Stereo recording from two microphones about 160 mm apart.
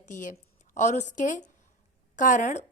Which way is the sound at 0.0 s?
55° left (ahead or behind).